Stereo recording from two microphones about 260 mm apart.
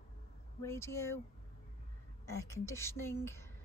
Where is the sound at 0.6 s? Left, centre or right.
Centre.